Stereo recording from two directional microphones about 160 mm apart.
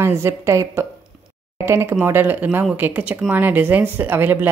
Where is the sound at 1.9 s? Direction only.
15° right (ahead or behind).